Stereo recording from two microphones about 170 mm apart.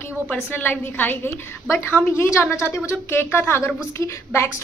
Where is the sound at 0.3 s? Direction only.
10° left (ahead or behind).